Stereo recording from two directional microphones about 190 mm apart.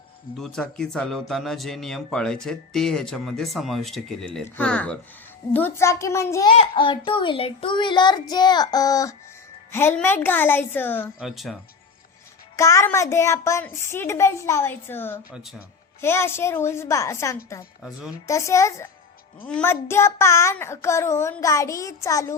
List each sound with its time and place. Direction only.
0.3 s speech: 5° left (ahead or behind)
6.5 s a child's voice: 25° left (ahead or behind); by 11.1 s 10° left (ahead or behind)
11.2 s speech: centre (ahead or behind)
12.5 s speech: 15° left (ahead or behind)